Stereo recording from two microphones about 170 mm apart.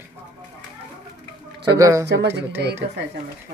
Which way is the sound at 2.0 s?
90° right.